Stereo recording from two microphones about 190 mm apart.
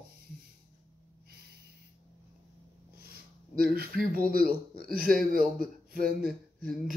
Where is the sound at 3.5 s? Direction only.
50° right (ahead or behind).